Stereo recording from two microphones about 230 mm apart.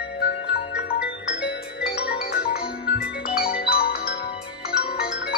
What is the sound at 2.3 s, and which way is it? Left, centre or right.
Music, left.